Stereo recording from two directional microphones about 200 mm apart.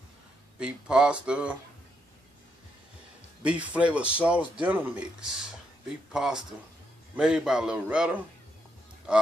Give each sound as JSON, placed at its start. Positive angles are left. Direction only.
{"t": 0.6, "sound": "a man's voice", "side_deg": -5}
{"t": 3.4, "sound": "a man's voice", "side_deg": -5}